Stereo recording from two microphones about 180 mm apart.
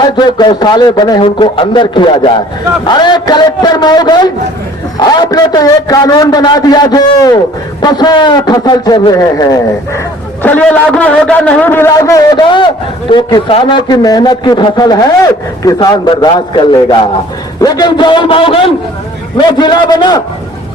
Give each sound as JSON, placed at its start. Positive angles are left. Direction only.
{"t": 0.0, "sound": "a man's voice", "side_deg": 25}
{"t": 10.4, "sound": "a man's voice", "side_deg": 10}